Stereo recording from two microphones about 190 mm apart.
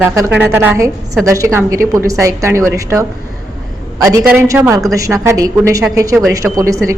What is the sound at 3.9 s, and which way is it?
A man's voice, 15° right (ahead or behind).